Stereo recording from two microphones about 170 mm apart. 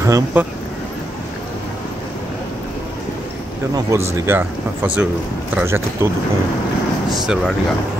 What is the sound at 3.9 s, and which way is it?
Speech, 15° right (ahead or behind).